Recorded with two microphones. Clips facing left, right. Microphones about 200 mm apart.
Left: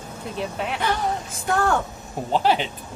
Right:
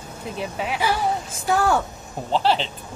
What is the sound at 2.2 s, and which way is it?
Speech, 5° left (ahead or behind).